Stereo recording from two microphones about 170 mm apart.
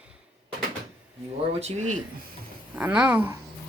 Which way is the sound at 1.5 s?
40° right (ahead or behind).